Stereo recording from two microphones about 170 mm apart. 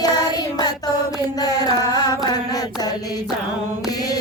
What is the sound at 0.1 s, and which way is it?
Child singing, 20° left (ahead or behind).